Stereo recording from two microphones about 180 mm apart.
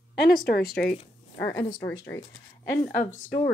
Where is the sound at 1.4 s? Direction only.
20° left (ahead or behind).